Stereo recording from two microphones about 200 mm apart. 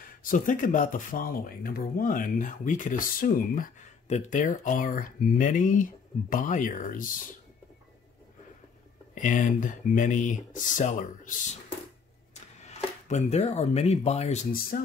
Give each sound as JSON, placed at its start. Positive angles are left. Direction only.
{"t": 0.2, "sound": "speech", "side_deg": 40}
{"t": 9.1, "sound": "speech", "side_deg": 40}
{"t": 12.5, "sound": "speech", "side_deg": 35}